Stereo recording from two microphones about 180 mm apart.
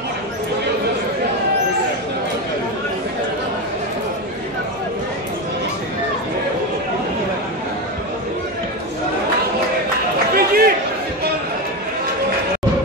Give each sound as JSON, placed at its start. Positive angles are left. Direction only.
{"t": 10.3, "sound": "chatter", "side_deg": -60}